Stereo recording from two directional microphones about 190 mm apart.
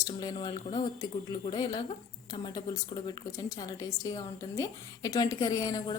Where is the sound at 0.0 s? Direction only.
20° left (ahead or behind).